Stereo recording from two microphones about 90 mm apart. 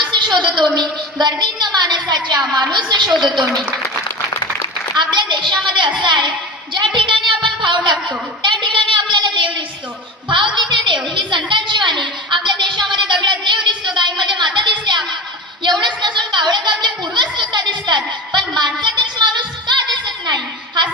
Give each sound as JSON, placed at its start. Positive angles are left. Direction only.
{"t": 0.0, "sound": "a woman's voice", "side_deg": -55}
{"t": 4.9, "sound": "a woman's voice", "side_deg": -60}
{"t": 6.7, "sound": "a sound", "side_deg": -65}
{"t": 10.2, "sound": "a woman's voice", "side_deg": -60}